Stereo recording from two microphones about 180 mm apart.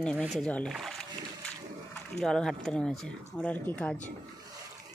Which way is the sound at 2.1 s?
5° left (ahead or behind).